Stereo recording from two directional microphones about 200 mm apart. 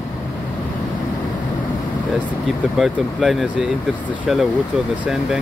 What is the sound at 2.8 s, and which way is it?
Speech, centre (ahead or behind).